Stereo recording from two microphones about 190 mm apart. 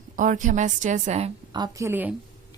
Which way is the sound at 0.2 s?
40° right (ahead or behind).